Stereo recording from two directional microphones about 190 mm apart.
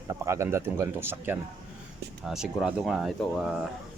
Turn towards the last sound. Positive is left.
turn(degrees=0)  # may be behind; listen again after turning